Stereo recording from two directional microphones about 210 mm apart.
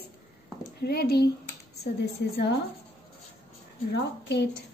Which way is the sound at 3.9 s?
55° left (ahead or behind).